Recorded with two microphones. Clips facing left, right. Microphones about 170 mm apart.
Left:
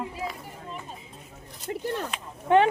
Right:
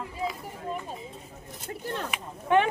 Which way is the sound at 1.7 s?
25° left (ahead or behind).